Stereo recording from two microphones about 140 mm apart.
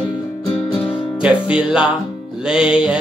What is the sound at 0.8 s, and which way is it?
Music, 40° left (ahead or behind).